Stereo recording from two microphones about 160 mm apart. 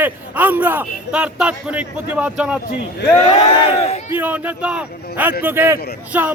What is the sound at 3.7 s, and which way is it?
Speech, 40° left (ahead or behind).